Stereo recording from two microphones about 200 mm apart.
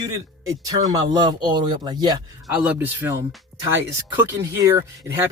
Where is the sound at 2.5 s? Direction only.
5° right (ahead or behind).